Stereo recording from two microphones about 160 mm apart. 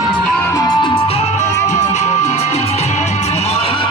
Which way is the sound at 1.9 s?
45° left (ahead or behind).